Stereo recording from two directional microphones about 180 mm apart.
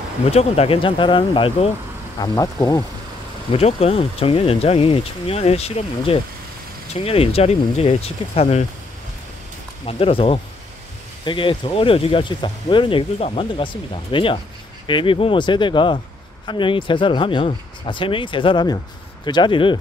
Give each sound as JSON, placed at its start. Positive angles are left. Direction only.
{"t": 0.3, "sound": "speech", "side_deg": 35}
{"t": 3.5, "sound": "speech", "side_deg": 35}
{"t": 9.8, "sound": "speech", "side_deg": 30}